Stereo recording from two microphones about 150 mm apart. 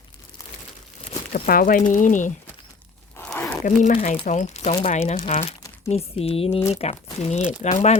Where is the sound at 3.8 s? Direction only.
50° left (ahead or behind).